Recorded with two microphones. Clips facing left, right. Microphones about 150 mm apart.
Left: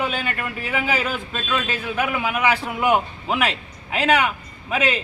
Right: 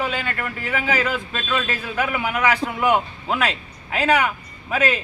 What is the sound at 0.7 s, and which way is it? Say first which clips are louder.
A man's voice: right 1 dB; 10° left (ahead or behind).